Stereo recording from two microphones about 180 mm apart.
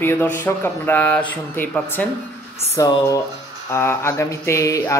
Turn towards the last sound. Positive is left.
turn(degrees=15)  # may be behind; listen again after turning